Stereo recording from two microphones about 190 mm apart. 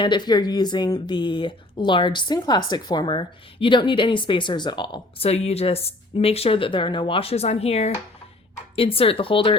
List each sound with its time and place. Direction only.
0.0 s speech: 25° left (ahead or behind)